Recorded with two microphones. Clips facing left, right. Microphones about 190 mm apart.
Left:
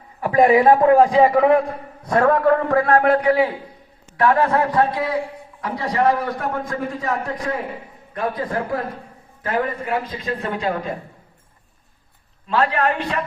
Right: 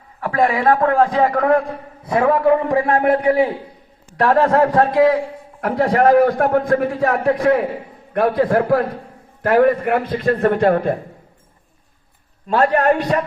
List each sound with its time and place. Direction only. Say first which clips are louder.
0.2 s a man's voice: left 4 dB; 20° left (ahead or behind)
2.0 s a man's voice: right 1 dB; 10° right (ahead or behind); by 3.3 s 25° right (ahead or behind)
4.2 s a man's voice: right 3 dB; 40° right (ahead or behind); by 10.9 s 55° right (ahead or behind)
12.5 s a man's voice: right 5 dB; 45° right (ahead or behind)